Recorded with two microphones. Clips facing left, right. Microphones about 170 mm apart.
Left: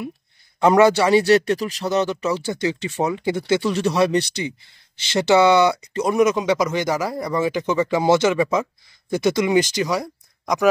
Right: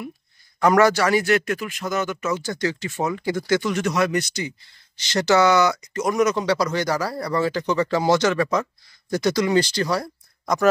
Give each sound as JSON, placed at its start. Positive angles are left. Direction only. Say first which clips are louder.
{"t": 0.6, "sound": "speech", "louder": "left 2 dB", "side_deg": 20}
{"t": 2.6, "sound": "speech", "louder": "left 3 dB", "side_deg": 15}
{"t": 6.1, "sound": "speech", "louder": "left 3 dB", "side_deg": 15}
{"t": 9.1, "sound": "speech", "louder": "left 2 dB", "side_deg": 25}